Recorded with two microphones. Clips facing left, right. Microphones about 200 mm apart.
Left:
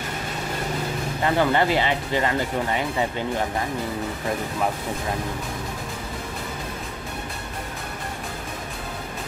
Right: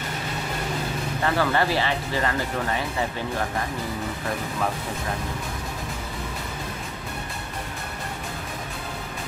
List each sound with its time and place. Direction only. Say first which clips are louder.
1.2 s speech: left 3 dB; 20° left (ahead or behind)